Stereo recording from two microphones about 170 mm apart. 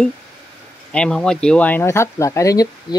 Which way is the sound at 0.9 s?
5° left (ahead or behind).